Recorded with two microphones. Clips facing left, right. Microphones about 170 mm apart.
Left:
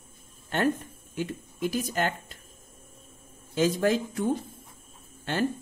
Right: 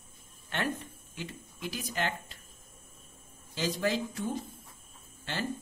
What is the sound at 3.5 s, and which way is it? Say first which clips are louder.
Speech: left 7 dB; 50° left (ahead or behind).